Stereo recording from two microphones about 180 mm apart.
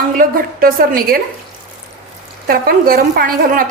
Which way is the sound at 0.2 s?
50° right (ahead or behind).